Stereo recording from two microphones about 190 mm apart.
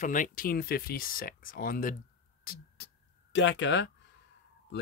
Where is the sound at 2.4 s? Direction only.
50° left (ahead or behind).